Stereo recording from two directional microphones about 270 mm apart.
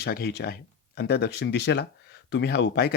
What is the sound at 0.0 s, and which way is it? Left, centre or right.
Speech, left.